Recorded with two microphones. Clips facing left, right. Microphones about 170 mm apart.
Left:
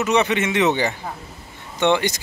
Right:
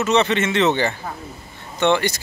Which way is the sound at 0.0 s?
15° left (ahead or behind).